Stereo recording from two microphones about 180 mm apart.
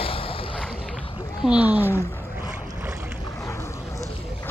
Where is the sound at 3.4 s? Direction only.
15° left (ahead or behind).